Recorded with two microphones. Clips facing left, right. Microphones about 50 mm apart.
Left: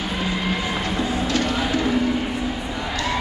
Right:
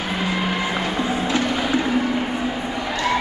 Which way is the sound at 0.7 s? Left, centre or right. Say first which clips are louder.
Right 1 dB; centre.